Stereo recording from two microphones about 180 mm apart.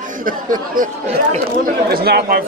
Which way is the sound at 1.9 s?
60° right (ahead or behind).